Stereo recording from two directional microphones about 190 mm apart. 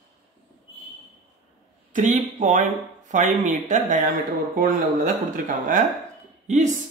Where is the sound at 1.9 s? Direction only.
40° right (ahead or behind).